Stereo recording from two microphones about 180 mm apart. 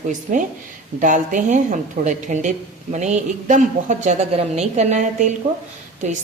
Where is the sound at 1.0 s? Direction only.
45° right (ahead or behind).